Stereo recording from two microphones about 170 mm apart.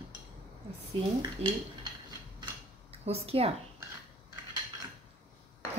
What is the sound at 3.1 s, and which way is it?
Speech, 35° right (ahead or behind).